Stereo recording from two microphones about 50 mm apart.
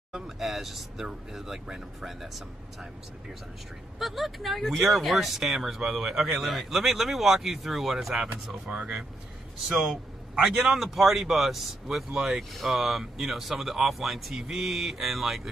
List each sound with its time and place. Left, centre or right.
0.1 s speech: centre
4.0 s speech: centre
8.6 s speech: right
10.4 s a man's voice: centre